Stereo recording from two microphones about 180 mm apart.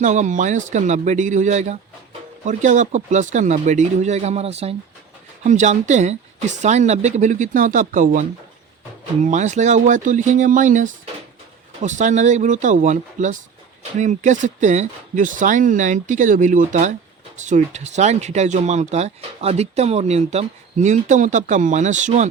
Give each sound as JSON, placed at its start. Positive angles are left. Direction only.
{"t": 0.0, "sound": "speech", "side_deg": -40}
{"t": 9.2, "sound": "speech", "side_deg": -40}